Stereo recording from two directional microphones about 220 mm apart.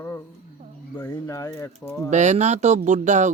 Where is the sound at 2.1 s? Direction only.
30° right (ahead or behind).